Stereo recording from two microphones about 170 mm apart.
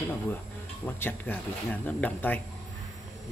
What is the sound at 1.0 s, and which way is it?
Speech, 10° left (ahead or behind).